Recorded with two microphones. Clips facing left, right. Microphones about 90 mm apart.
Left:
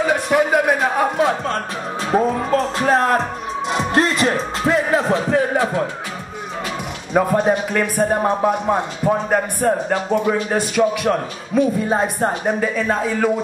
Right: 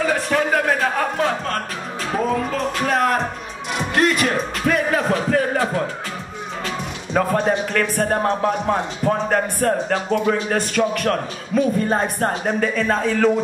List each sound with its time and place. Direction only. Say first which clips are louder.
0.0 s a man's voice: left 3 dB; 15° left (ahead or behind)
2.1 s a sound: left 4 dB; 30° left (ahead or behind)
3.7 s music: even; 30° left (ahead or behind)
7.2 s a man's voice: left 3 dB; 15° left (ahead or behind)